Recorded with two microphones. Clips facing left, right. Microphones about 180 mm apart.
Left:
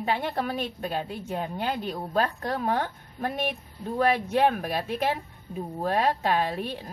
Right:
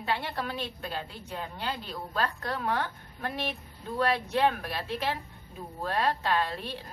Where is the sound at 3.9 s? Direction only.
50° left (ahead or behind).